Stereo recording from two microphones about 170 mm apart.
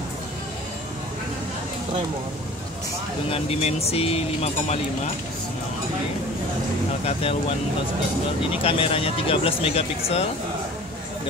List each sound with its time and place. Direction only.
3.3 s speech: 35° left (ahead or behind)
7.1 s speech: 35° left (ahead or behind)
8.6 s speech: 35° left (ahead or behind)